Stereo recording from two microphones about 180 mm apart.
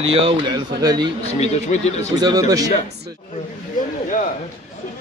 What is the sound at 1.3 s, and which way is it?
Speech, 35° left (ahead or behind).